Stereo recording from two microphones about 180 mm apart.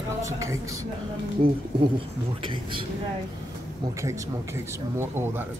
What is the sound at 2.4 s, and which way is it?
Speech, 25° right (ahead or behind).